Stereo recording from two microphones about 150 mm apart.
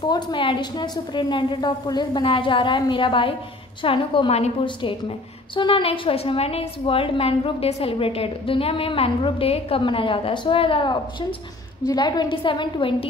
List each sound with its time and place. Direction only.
0.0 s a woman's voice: 30° left (ahead or behind)